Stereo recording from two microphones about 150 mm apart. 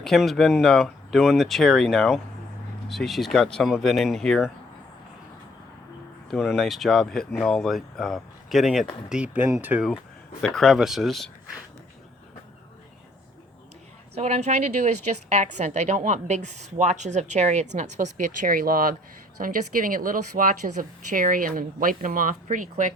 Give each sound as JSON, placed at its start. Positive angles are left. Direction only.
{"t": 0.0, "sound": "speech", "side_deg": 0}
{"t": 6.3, "sound": "speech", "side_deg": 0}
{"t": 14.2, "sound": "a woman's voice", "side_deg": -50}